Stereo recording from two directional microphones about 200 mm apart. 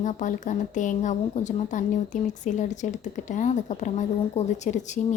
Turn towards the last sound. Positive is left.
turn(degrees=35)  # may be behind; listen again after turning